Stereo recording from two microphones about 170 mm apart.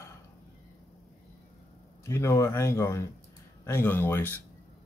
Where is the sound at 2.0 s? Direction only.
15° left (ahead or behind).